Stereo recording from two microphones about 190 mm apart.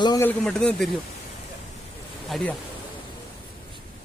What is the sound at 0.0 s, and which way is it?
Speech, 20° left (ahead or behind).